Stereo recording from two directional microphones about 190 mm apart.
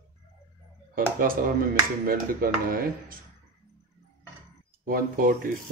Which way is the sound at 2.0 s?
50° right (ahead or behind).